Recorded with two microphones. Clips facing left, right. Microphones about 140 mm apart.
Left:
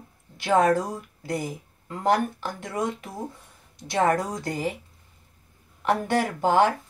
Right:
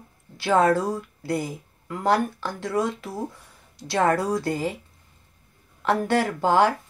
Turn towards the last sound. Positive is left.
turn(degrees=20)  # may be behind; listen again after turning